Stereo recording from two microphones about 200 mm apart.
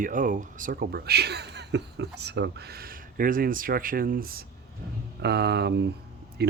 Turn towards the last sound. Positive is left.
turn(degrees=-55)  # may be behind; listen again after turning